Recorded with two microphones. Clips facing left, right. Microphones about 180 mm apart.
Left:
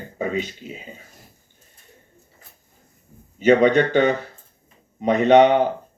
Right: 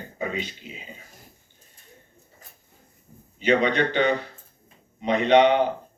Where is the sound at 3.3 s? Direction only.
45° left (ahead or behind).